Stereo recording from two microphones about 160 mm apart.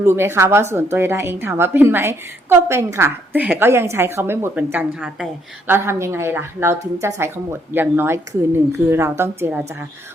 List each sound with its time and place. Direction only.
0.0 s a woman's voice: 15° right (ahead or behind)